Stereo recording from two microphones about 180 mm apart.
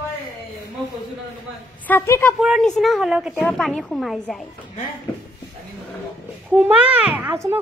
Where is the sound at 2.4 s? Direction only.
Centre (ahead or behind).